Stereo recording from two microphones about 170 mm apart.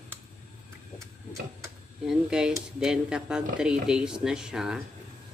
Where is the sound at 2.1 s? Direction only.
5° right (ahead or behind).